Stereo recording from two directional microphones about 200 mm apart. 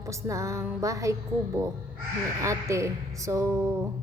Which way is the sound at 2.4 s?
15° right (ahead or behind).